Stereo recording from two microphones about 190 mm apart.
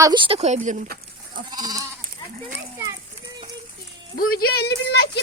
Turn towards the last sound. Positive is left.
turn(degrees=60)  # may be behind; listen again after turning